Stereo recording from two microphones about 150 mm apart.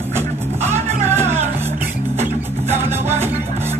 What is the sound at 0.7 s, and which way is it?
Music, 50° right (ahead or behind).